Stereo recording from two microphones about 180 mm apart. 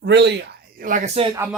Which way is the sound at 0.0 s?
70° right (ahead or behind).